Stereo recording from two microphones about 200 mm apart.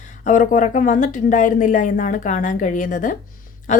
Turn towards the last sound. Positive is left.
turn(degrees=40)  # may be behind; listen again after turning